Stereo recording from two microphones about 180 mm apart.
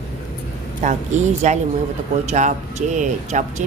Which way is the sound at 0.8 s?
40° right (ahead or behind).